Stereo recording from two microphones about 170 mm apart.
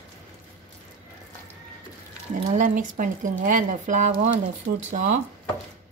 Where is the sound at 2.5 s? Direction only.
50° right (ahead or behind).